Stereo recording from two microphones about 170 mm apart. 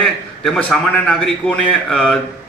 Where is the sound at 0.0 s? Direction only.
5° left (ahead or behind).